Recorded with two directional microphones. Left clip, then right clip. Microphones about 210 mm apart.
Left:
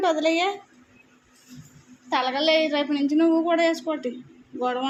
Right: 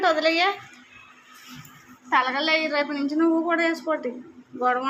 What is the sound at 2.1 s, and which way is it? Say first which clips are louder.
A woman's voice: even; 30° left (ahead or behind).